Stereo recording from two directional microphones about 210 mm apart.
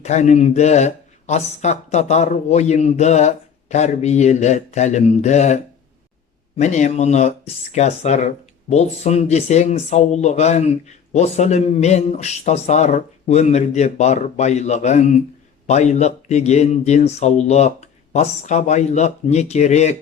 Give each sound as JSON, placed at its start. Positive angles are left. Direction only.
{"t": 0.0, "sound": "speech", "side_deg": 35}
{"t": 6.6, "sound": "speech", "side_deg": 35}